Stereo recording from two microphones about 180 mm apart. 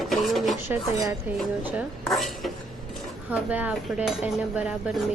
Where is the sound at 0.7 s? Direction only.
20° right (ahead or behind).